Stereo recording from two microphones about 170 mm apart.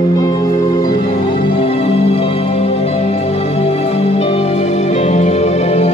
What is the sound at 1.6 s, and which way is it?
Music, 35° left (ahead or behind).